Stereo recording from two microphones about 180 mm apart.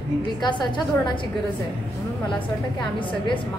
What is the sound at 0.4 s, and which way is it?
Speech, 25° left (ahead or behind).